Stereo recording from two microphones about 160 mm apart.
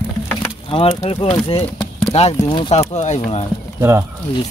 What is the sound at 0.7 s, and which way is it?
Speech, 35° left (ahead or behind).